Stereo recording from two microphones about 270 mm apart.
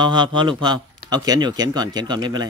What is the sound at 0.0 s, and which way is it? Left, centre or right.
Speech, centre.